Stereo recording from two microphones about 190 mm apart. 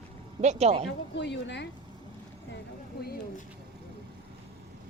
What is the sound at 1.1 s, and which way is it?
Speech, 65° left (ahead or behind).